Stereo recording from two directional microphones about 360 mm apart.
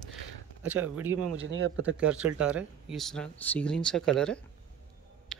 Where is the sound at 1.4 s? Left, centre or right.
Right.